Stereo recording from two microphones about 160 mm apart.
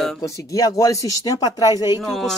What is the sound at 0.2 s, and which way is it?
Speech, 20° left (ahead or behind).